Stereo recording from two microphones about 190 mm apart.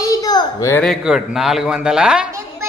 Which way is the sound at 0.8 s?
Centre (ahead or behind).